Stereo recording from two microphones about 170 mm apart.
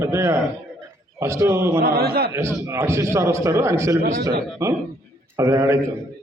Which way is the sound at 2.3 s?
15° right (ahead or behind).